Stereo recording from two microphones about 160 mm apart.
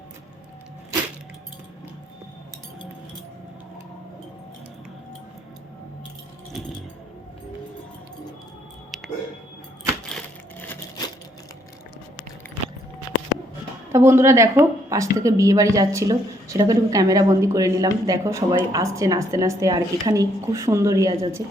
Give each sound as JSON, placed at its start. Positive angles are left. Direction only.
{"t": 13.9, "sound": "a woman's voice", "side_deg": -15}